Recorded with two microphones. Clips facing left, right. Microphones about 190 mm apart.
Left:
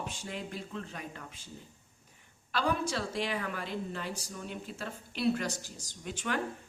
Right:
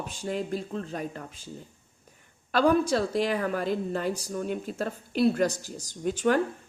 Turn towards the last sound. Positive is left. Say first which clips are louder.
# right 11 dB
turn(degrees=-40)  # may be behind; listen again after turning